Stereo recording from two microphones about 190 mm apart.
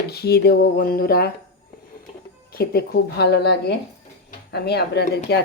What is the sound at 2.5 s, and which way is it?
Speech, 55° left (ahead or behind).